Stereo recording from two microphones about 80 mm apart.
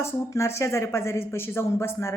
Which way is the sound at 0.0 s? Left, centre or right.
Left.